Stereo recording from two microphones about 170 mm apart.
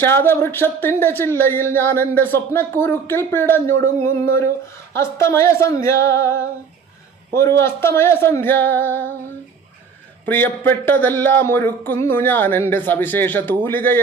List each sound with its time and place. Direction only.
0.0 s speech: 15° left (ahead or behind)
7.3 s speech: 15° left (ahead or behind)
10.2 s speech: 10° left (ahead or behind)